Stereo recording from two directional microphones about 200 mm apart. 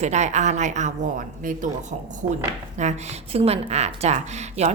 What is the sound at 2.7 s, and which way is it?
A woman's voice, 35° right (ahead or behind).